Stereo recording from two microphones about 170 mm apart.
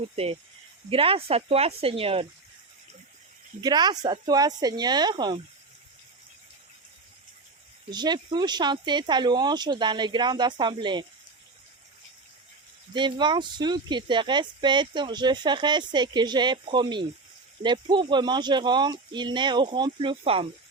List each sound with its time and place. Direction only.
0.9 s speech: 35° right (ahead or behind)
3.6 s speech: 25° right (ahead or behind)
7.9 s speech: 25° right (ahead or behind)
12.9 s speech: 25° right (ahead or behind)